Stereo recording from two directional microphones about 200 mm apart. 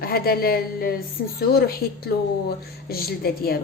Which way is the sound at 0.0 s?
50° left (ahead or behind).